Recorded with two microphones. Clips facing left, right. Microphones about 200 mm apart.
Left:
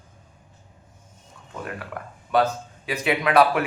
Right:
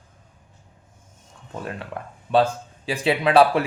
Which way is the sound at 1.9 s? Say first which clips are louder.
Right 2 dB; 25° right (ahead or behind).